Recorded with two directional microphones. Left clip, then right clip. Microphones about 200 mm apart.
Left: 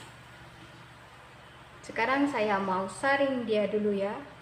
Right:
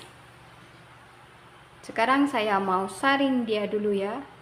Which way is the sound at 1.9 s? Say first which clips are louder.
Right 5 dB; 30° right (ahead or behind).